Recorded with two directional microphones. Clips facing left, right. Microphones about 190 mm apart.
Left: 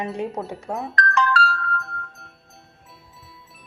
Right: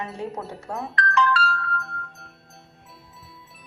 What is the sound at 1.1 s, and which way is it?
Music, 45° left (ahead or behind).